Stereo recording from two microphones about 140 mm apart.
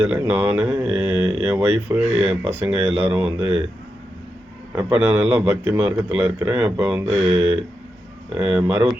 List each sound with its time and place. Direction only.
0.0 s a man's voice: 15° right (ahead or behind)
4.8 s a man's voice: 15° right (ahead or behind)